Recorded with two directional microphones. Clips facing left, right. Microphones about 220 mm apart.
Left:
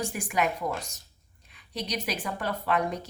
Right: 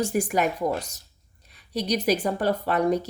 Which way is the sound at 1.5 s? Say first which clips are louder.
Right 7 dB; 40° right (ahead or behind).